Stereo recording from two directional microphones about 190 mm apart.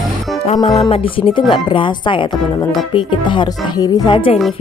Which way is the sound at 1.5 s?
25° left (ahead or behind).